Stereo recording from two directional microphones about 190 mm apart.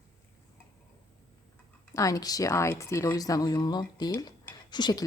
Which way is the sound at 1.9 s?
15° left (ahead or behind).